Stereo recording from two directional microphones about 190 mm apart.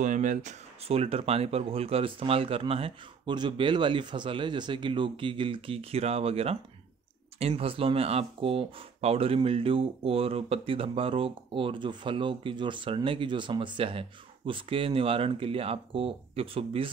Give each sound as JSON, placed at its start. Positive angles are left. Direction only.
{"t": 0.0, "sound": "speech", "side_deg": -40}